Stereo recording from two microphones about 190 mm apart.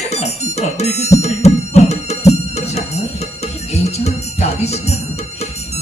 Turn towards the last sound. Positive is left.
turn(degrees=35)  # may be behind; listen again after turning